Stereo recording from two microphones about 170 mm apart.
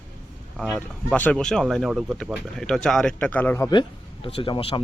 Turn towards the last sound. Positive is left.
turn(degrees=30)  # may be behind; listen again after turning